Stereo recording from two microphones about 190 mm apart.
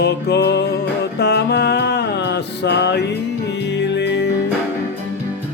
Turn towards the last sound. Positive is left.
turn(degrees=65)  # may be behind; listen again after turning